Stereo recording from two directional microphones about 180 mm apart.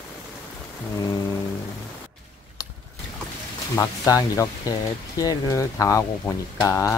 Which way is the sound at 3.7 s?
15° left (ahead or behind).